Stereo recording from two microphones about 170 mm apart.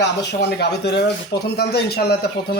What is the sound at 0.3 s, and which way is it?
Speech, 75° left (ahead or behind).